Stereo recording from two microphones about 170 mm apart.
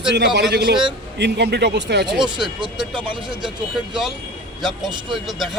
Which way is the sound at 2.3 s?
25° right (ahead or behind).